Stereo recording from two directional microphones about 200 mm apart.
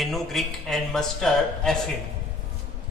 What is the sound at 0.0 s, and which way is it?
Speech, centre (ahead or behind).